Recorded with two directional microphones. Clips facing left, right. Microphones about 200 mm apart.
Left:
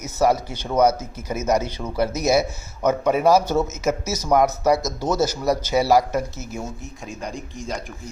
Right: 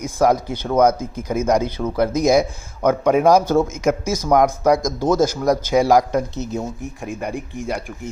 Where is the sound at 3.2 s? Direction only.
5° left (ahead or behind).